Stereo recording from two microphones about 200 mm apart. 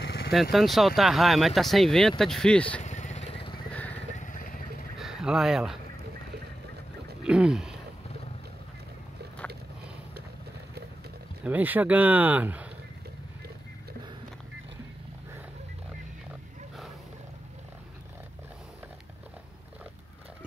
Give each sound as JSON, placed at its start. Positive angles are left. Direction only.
{"t": 0.0, "sound": "vehicle", "side_deg": 55}
{"t": 0.3, "sound": "speech", "side_deg": 0}
{"t": 2.8, "sound": "vehicle", "side_deg": 35}
{"t": 4.2, "sound": "vehicle", "side_deg": 40}
{"t": 4.9, "sound": "a sound", "side_deg": 0}
{"t": 7.2, "sound": "speech", "side_deg": -5}
{"t": 11.4, "sound": "speech", "side_deg": -10}